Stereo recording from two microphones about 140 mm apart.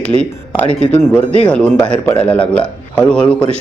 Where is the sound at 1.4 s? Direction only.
10° left (ahead or behind).